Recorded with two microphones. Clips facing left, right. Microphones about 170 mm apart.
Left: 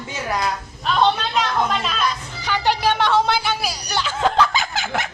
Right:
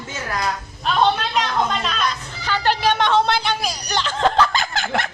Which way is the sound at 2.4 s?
15° left (ahead or behind).